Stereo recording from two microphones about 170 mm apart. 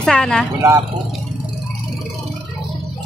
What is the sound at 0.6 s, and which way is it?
Speech, 20° right (ahead or behind).